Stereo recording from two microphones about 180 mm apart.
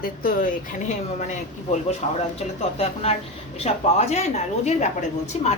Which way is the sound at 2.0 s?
35° left (ahead or behind).